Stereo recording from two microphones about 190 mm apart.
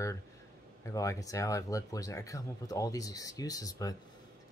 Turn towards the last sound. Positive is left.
turn(degrees=20)  # may be behind; listen again after turning